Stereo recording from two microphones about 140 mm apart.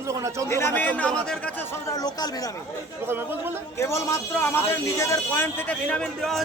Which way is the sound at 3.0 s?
15° right (ahead or behind).